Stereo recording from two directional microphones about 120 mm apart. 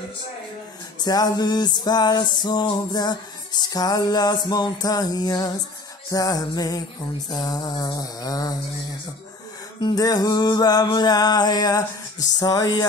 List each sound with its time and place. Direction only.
1.0 s music: 35° left (ahead or behind)
9.8 s music: 35° left (ahead or behind)